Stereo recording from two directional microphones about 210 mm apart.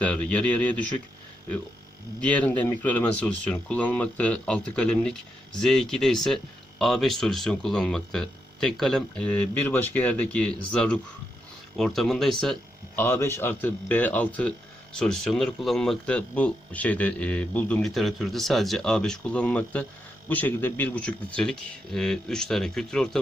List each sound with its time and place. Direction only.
0.0 s speech: 5° left (ahead or behind)
2.2 s speech: 5° left (ahead or behind)